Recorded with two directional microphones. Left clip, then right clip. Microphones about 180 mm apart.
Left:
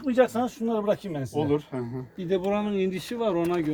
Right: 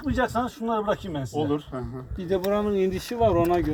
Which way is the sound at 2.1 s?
5° left (ahead or behind).